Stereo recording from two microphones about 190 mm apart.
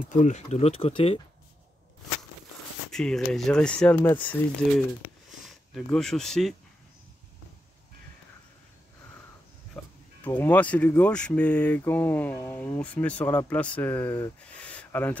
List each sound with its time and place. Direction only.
0.1 s speech: 40° left (ahead or behind)
2.9 s speech: 5° left (ahead or behind)
9.8 s a sound: 5° left (ahead or behind)
10.2 s speech: 10° left (ahead or behind)